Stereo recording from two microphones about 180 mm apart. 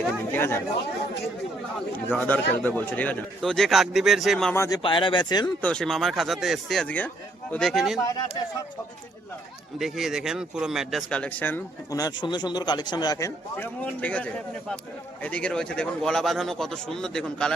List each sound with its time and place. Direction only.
0.3 s speech: 10° left (ahead or behind)
2.0 s a man's voice: 10° left (ahead or behind)
4.5 s speech: 15° left (ahead or behind)
4.8 s speech: 30° left (ahead or behind)
5.6 s a man's voice: 5° left (ahead or behind)
8.0 s speech: 20° left (ahead or behind)
9.7 s a man's voice: centre (ahead or behind)